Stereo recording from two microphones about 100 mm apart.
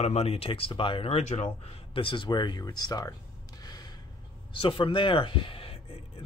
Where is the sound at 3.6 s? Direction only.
45° left (ahead or behind).